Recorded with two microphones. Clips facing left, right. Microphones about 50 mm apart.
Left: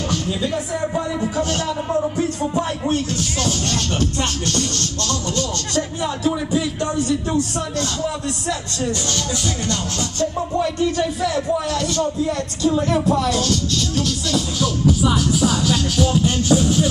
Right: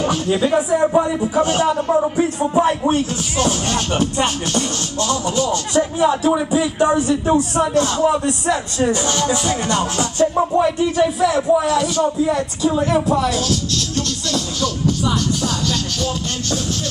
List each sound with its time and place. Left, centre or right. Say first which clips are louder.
0.3 s speech: right 7 dB; right; by 16.9 s centre